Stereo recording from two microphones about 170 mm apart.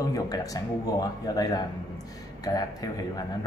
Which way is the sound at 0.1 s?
20° left (ahead or behind).